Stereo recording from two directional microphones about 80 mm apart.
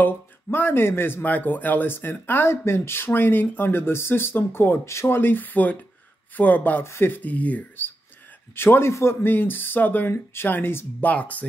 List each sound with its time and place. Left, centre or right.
0.0 s speech: left